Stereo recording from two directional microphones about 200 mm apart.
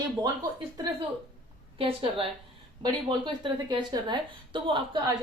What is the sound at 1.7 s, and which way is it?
Speech, 25° right (ahead or behind).